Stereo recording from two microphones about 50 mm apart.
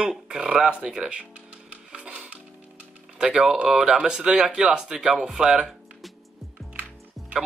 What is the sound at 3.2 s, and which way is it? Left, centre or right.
Speech, centre.